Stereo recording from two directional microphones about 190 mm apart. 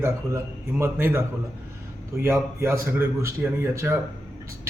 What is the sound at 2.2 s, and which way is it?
A man's voice, 15° right (ahead or behind).